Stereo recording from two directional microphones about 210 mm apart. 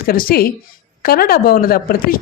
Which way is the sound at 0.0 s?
45° left (ahead or behind).